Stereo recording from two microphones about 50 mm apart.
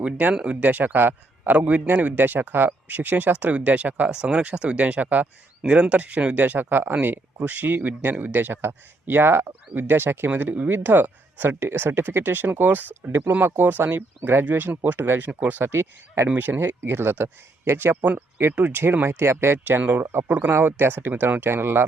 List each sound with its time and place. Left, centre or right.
0.4 s speech: right
1.5 s speech: right
4.1 s speech: centre; by 10.3 s right
10.3 s speech: right
13.1 s speech: right
15.3 s speech: right
15.6 s speech: right
16.3 s speech: right
19.0 s speech: right
19.8 s speech: right
20.7 s speech: right
21.4 s speech: right